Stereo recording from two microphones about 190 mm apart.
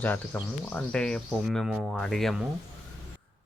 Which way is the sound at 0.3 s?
5° left (ahead or behind).